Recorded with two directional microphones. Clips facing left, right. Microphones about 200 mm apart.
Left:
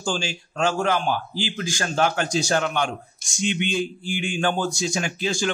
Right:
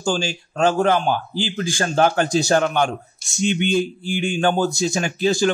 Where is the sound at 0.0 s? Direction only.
40° right (ahead or behind).